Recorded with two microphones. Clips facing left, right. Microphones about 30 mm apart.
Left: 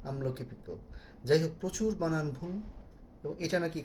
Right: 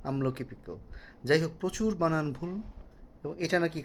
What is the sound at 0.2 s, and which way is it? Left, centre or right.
Speech, right.